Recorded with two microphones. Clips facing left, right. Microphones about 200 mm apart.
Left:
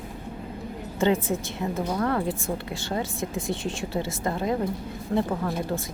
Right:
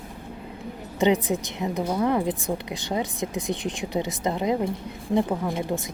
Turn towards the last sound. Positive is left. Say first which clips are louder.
# right 1 dB
turn(degrees=-15)  # may be behind; listen again after turning